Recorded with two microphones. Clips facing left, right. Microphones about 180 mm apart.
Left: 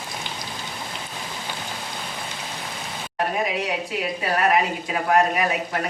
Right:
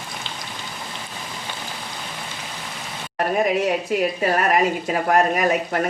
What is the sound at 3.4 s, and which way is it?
Speech, 50° right (ahead or behind).